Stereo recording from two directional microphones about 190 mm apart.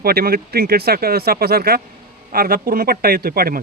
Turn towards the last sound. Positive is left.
turn(degrees=-50)  # may be behind; listen again after turning